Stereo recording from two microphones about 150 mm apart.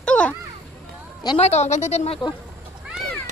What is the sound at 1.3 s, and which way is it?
Speech, 45° left (ahead or behind).